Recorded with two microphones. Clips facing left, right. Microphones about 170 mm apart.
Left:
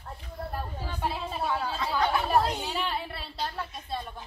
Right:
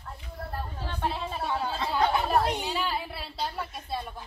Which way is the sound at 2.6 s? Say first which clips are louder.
Right 1 dB; centre (ahead or behind).